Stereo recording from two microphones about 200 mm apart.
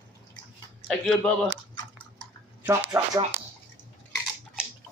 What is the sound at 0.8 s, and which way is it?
Speech, 5° left (ahead or behind).